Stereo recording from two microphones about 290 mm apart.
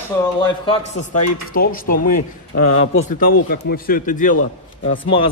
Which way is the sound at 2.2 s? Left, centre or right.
Left.